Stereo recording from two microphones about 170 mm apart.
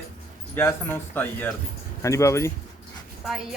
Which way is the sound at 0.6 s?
15° left (ahead or behind).